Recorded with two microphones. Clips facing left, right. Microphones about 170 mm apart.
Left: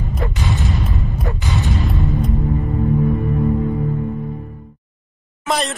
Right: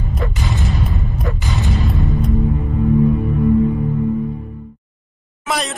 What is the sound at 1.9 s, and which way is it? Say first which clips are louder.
Music: right 1 dB; centre (ahead or behind).